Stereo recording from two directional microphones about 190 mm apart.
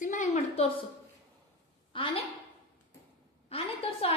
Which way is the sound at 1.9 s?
25° left (ahead or behind).